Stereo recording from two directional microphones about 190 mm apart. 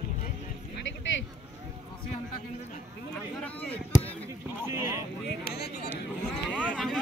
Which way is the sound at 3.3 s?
5° left (ahead or behind).